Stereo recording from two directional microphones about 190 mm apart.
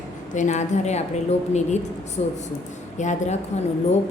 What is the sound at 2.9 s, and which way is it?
Speech, 40° left (ahead or behind).